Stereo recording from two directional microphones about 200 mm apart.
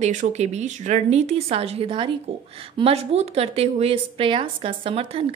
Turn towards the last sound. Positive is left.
turn(degrees=-25)  # may be behind; listen again after turning